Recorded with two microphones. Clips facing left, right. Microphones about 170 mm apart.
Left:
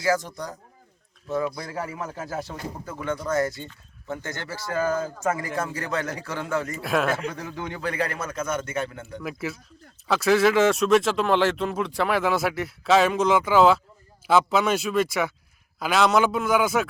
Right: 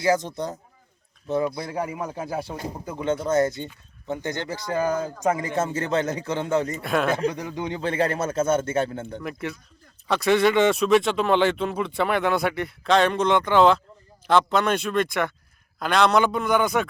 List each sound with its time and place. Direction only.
0.0 s speech: 20° right (ahead or behind)
1.7 s speech: 15° right (ahead or behind)
6.8 s speech: centre (ahead or behind)
7.3 s speech: 20° right (ahead or behind)
9.2 s speech: 5° left (ahead or behind)